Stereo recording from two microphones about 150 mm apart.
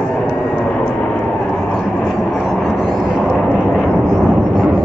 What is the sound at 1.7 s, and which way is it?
Vehicle, centre (ahead or behind).